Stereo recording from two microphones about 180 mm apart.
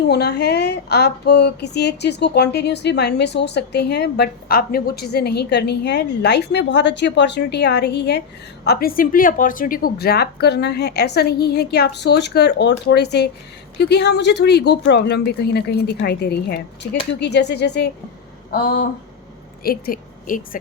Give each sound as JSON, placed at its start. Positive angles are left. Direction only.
{"t": 0.1, "sound": "a woman's voice", "side_deg": 65}